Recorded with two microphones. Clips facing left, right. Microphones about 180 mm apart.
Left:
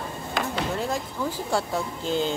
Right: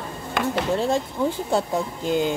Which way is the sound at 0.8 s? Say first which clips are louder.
Right 6 dB; 25° right (ahead or behind).